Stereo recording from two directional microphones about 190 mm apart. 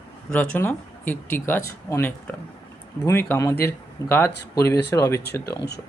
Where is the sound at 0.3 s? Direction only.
10° left (ahead or behind).